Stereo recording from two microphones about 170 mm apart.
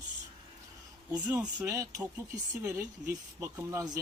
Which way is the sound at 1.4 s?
20° right (ahead or behind).